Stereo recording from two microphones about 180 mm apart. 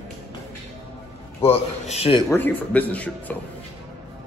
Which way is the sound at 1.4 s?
35° left (ahead or behind).